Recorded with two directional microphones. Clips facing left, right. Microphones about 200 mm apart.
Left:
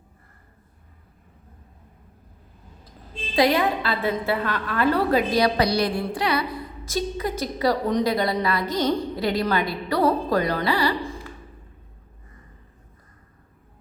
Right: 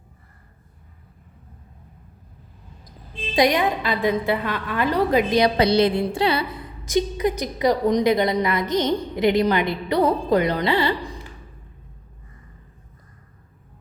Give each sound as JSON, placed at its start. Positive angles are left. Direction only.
{"t": 3.3, "sound": "a woman's voice", "side_deg": -15}